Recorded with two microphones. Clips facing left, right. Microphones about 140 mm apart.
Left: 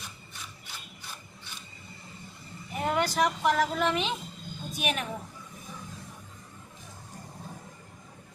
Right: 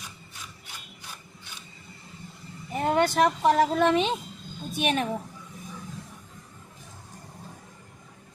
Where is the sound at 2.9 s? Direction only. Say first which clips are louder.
Right 5 dB; 25° right (ahead or behind).